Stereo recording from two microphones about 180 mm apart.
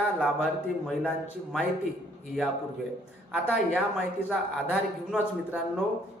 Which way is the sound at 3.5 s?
Centre (ahead or behind).